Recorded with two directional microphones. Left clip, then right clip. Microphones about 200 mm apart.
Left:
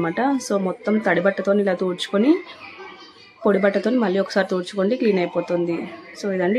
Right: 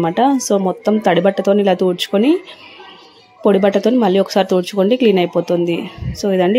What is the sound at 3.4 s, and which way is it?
Speech, 25° right (ahead or behind).